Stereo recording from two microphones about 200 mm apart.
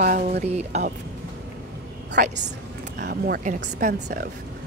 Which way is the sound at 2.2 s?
45° right (ahead or behind).